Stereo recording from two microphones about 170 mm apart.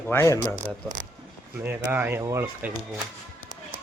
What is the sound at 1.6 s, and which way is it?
Speech, 10° right (ahead or behind).